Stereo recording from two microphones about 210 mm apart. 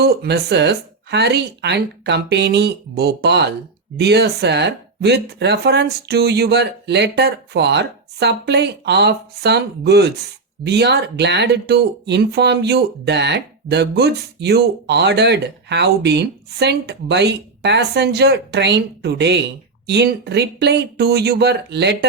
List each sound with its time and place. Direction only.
0.0 s speech: 50° right (ahead or behind)